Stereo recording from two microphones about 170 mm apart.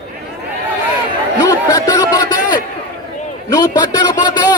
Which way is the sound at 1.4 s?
20° left (ahead or behind).